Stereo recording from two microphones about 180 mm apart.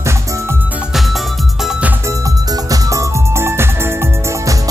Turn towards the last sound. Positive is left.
turn(degrees=-15)  # may be behind; listen again after turning